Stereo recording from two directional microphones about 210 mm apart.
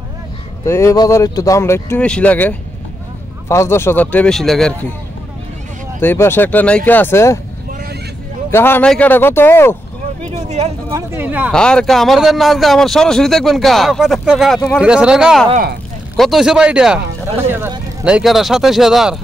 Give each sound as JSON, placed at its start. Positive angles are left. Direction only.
{"t": 0.7, "sound": "speech", "side_deg": 15}
{"t": 5.9, "sound": "speech", "side_deg": 10}
{"t": 8.5, "sound": "speech", "side_deg": 10}
{"t": 10.3, "sound": "a sound", "side_deg": -30}
{"t": 10.9, "sound": "speech", "side_deg": -15}
{"t": 11.5, "sound": "speech", "side_deg": 5}